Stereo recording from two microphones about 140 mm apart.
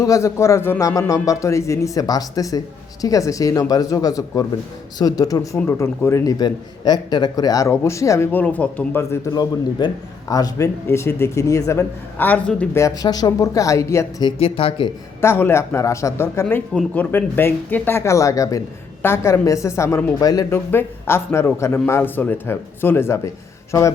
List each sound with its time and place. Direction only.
0.0 s a man's voice: 25° left (ahead or behind)
12.8 s a man's voice: 25° left (ahead or behind)
14.3 s speech: 40° left (ahead or behind)
15.2 s a man's voice: 15° left (ahead or behind)
20.7 s speech: 15° left (ahead or behind)